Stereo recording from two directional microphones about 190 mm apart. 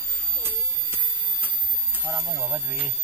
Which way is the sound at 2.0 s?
10° right (ahead or behind).